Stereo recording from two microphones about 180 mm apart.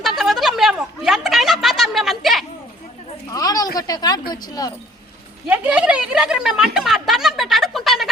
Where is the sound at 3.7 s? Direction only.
20° left (ahead or behind).